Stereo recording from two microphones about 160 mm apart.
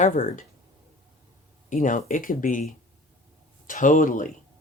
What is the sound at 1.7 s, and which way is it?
Speech, 50° left (ahead or behind).